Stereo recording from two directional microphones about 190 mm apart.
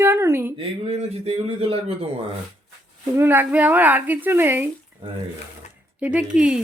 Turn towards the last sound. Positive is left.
turn(degrees=-5)  # may be behind; listen again after turning